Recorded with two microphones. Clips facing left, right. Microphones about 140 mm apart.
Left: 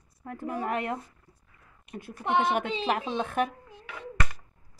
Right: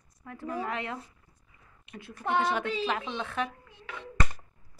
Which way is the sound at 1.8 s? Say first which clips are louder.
Left 5 dB; 45° left (ahead or behind).